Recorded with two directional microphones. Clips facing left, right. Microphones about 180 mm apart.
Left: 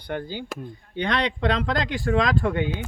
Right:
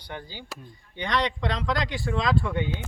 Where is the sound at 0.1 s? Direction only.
55° left (ahead or behind).